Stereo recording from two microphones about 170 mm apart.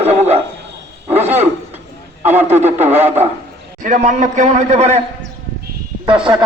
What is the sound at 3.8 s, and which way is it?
A man's voice, 50° right (ahead or behind).